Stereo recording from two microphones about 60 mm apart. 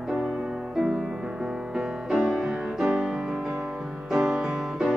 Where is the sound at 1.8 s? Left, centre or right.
Centre.